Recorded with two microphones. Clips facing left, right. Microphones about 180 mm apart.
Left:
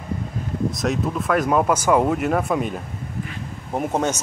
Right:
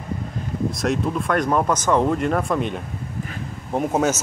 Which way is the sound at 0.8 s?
Centre (ahead or behind).